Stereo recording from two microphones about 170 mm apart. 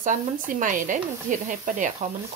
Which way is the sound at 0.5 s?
50° right (ahead or behind).